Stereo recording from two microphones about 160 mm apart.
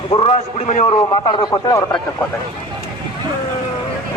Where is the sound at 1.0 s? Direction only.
25° left (ahead or behind).